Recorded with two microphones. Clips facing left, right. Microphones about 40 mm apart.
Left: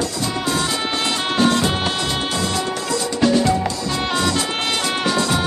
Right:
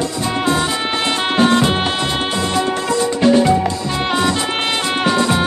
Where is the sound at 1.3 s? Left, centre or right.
Right.